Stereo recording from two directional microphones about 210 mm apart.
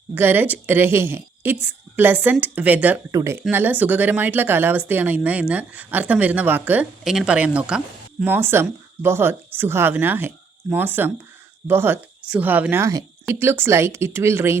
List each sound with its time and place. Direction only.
0.1 s speech: 10° right (ahead or behind)